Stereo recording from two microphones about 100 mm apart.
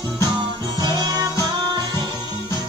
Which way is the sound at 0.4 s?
45° right (ahead or behind).